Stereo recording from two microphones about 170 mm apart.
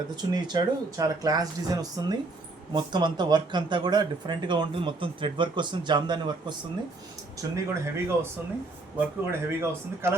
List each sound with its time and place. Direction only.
0.2 s speech: 25° right (ahead or behind)
7.5 s a man's voice: 15° right (ahead or behind)